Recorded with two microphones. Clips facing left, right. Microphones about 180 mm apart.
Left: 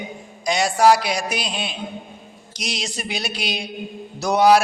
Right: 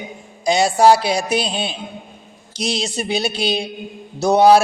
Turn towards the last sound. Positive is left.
turn(degrees=-25)  # may be behind; listen again after turning